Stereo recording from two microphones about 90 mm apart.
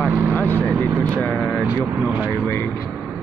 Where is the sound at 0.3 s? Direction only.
20° left (ahead or behind).